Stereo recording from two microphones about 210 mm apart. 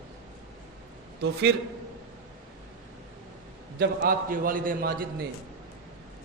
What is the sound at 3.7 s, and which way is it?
A man's voice, 50° right (ahead or behind).